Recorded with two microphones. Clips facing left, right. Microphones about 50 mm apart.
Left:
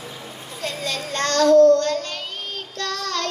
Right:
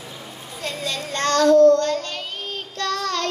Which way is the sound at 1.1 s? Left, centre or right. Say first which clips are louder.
Left 1 dB; right.